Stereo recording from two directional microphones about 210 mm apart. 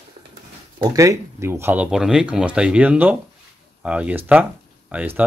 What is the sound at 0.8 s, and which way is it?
Speech, 15° right (ahead or behind).